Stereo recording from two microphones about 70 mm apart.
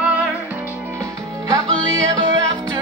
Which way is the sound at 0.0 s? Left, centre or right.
Centre.